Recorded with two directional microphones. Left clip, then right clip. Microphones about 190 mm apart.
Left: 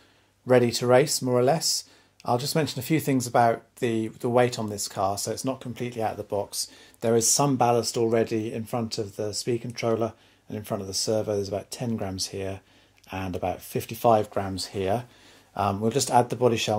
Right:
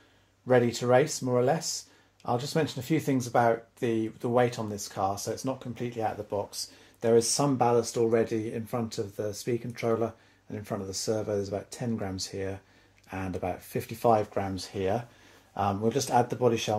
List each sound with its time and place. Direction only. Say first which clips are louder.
0.5 s speech: left 3 dB; 45° left (ahead or behind)